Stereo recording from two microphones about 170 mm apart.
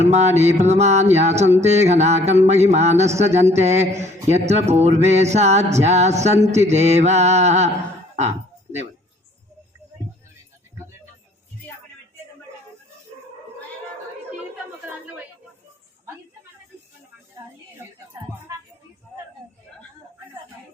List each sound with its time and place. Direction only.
0.0 s a man's voice: 40° right (ahead or behind)
0.5 s music: 40° right (ahead or behind)
1.1 s a man's voice: 40° right (ahead or behind)